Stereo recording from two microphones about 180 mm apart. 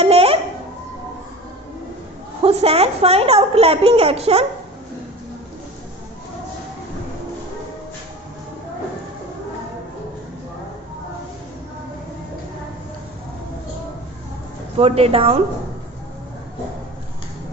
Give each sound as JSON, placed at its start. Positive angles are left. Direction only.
{"t": 0.0, "sound": "a sound", "side_deg": -30}
{"t": 2.4, "sound": "a woman's voice", "side_deg": -35}
{"t": 14.8, "sound": "a woman's voice", "side_deg": -35}